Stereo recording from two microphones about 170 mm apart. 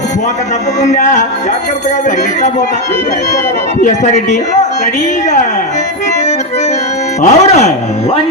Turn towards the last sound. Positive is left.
turn(degrees=40)  # may be behind; listen again after turning